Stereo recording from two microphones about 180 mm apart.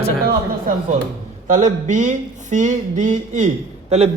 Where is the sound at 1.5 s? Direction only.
45° right (ahead or behind).